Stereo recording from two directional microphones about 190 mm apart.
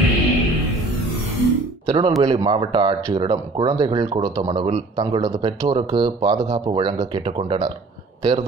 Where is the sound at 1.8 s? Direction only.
25° right (ahead or behind).